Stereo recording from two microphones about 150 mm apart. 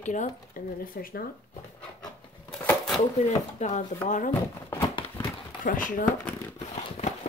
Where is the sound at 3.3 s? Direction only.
50° left (ahead or behind).